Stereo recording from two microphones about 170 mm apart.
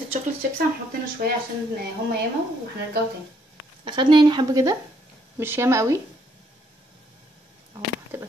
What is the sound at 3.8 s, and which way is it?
Speech, 25° right (ahead or behind).